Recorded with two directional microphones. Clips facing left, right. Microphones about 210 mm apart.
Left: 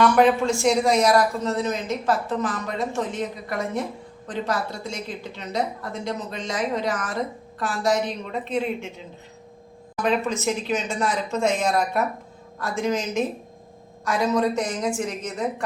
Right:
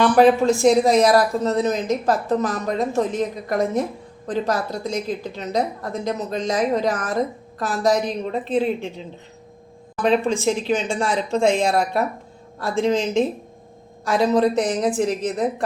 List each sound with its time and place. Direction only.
0.0 s speech: 35° right (ahead or behind)
10.0 s speech: 30° right (ahead or behind)